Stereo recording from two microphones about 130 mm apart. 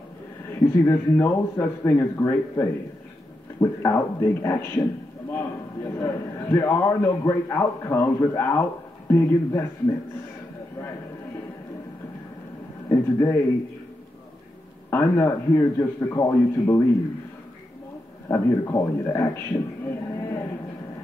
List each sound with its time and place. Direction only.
0.8 s a man's voice: 20° left (ahead or behind)
12.9 s a man's voice: 25° left (ahead or behind)
14.9 s a man's voice: 20° left (ahead or behind)
18.3 s a man's voice: 25° left (ahead or behind)
19.9 s a sound: 20° left (ahead or behind)